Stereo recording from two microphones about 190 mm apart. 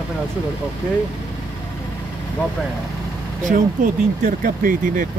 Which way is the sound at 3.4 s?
45° right (ahead or behind).